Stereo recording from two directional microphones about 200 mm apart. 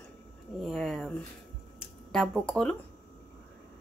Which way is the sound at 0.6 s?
Centre (ahead or behind).